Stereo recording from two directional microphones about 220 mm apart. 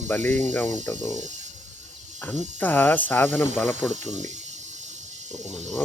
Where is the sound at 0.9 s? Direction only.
35° right (ahead or behind).